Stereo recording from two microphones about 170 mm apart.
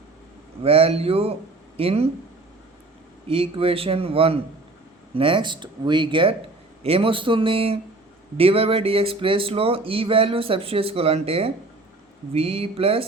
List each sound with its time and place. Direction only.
0.6 s speech: 35° right (ahead or behind)
3.2 s speech: 30° right (ahead or behind)